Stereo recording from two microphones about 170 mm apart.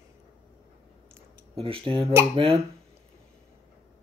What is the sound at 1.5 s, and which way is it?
Speech, 30° right (ahead or behind).